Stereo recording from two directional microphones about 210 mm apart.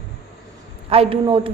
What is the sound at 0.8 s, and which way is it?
Speech, 25° right (ahead or behind).